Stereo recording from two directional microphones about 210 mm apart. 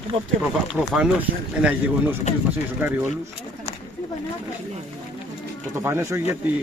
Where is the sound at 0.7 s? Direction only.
5° right (ahead or behind).